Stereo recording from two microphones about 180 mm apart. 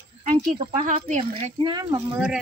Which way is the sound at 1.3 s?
25° right (ahead or behind).